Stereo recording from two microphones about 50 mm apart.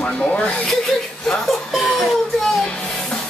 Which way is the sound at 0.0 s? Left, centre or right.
Left.